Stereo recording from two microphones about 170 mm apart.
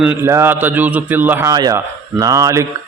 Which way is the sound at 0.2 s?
15° right (ahead or behind).